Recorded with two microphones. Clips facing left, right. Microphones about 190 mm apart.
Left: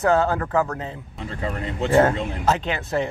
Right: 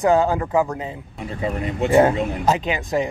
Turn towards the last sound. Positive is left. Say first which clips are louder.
# right 2 dB
turn(degrees=-15)  # may be behind; listen again after turning